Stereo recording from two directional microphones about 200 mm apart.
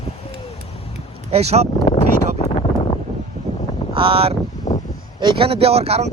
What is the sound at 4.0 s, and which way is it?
Speech, 30° right (ahead or behind).